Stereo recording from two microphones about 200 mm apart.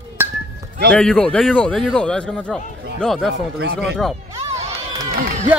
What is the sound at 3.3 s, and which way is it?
Speech, 60° right (ahead or behind).